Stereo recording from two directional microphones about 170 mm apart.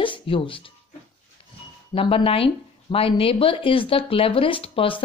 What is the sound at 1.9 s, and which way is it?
Speech, 30° left (ahead or behind).